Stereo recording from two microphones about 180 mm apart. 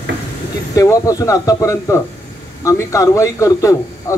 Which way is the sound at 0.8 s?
20° left (ahead or behind).